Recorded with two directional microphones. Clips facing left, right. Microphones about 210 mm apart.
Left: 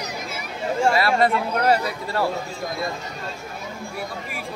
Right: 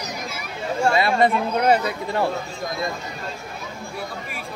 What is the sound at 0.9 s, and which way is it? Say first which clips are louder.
Speech: right 1 dB; 20° right (ahead or behind).